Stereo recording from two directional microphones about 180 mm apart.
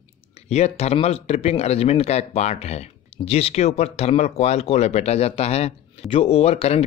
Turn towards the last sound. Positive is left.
turn(degrees=35)  # may be behind; listen again after turning